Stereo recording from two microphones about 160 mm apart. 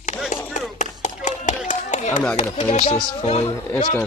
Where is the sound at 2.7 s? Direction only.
40° left (ahead or behind).